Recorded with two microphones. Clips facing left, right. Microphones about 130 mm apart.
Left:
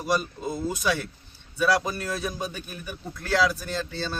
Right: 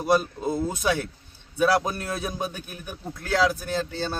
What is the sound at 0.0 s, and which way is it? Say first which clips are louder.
Speech: right 4 dB; 50° right (ahead or behind).